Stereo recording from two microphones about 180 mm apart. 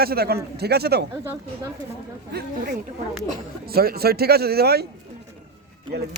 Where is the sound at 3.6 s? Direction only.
60° right (ahead or behind).